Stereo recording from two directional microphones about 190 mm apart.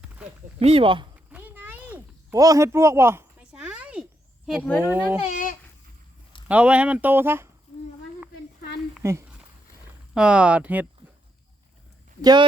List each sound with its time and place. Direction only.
0.6 s speech: 30° right (ahead or behind)
1.1 s a sound: 10° right (ahead or behind)
4.4 s speech: centre (ahead or behind)
4.8 s speech: 10° right (ahead or behind)
5.2 s a sound: 40° left (ahead or behind)
6.5 s speech: 5° right (ahead or behind)
9.0 s speech: 15° right (ahead or behind)
12.2 s speech: 20° right (ahead or behind)